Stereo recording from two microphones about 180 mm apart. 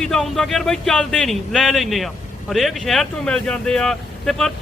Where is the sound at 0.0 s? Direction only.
5° left (ahead or behind).